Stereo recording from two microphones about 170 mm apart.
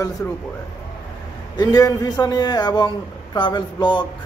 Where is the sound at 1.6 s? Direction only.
20° left (ahead or behind).